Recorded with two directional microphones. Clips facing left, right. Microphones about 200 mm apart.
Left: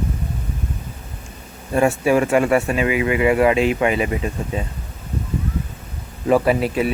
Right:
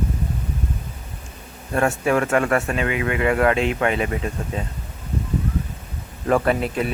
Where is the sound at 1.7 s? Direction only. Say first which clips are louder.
Left 3 dB; 10° left (ahead or behind).